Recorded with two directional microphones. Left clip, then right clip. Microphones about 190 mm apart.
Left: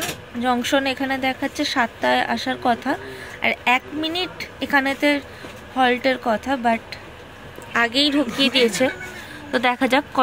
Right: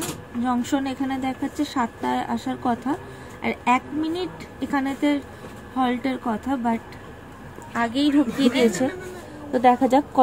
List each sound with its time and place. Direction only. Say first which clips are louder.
0.4 s a woman's voice: left 5 dB; 5° right (ahead or behind)